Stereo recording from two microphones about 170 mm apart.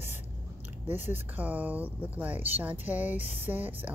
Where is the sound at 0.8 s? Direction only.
10° right (ahead or behind).